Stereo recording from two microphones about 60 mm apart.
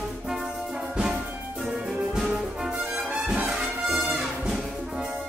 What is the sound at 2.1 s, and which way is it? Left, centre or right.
Music, centre.